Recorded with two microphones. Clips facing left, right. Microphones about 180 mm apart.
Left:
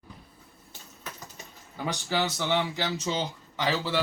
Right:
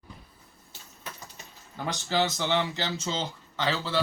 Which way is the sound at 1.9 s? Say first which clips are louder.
Right 2 dB; 10° left (ahead or behind).